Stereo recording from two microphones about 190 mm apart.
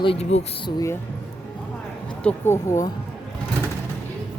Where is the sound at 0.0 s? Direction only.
30° left (ahead or behind).